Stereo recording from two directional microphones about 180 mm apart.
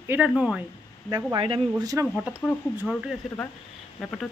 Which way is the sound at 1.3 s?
30° right (ahead or behind).